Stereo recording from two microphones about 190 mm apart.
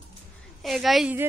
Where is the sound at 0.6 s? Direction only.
Centre (ahead or behind).